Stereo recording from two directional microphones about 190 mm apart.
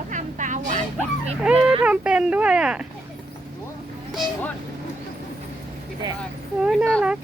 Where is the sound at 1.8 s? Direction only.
5° right (ahead or behind).